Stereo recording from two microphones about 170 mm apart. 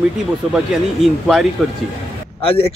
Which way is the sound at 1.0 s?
Centre (ahead or behind).